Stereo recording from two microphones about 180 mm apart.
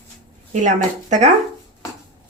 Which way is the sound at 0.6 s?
40° right (ahead or behind).